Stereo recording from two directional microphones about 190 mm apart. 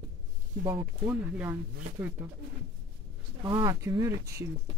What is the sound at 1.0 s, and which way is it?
Speech, 10° right (ahead or behind).